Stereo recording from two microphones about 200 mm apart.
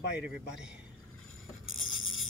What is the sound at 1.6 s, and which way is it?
Music, 85° left.